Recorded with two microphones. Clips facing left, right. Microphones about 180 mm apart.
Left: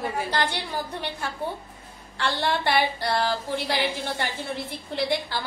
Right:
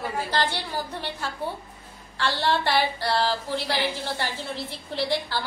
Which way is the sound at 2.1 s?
15° left (ahead or behind).